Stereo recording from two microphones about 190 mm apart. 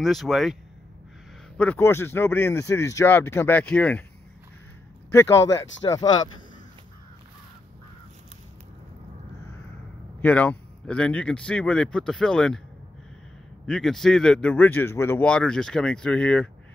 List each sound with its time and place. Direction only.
0.0 s a man's voice: centre (ahead or behind)
1.6 s speech: 10° left (ahead or behind)
5.1 s speech: 15° left (ahead or behind)
10.2 s a man's voice: 5° left (ahead or behind)
13.7 s a man's voice: centre (ahead or behind)